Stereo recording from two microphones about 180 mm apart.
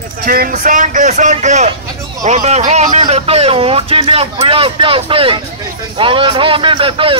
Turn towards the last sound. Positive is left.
turn(degrees=-30)  # may be behind; listen again after turning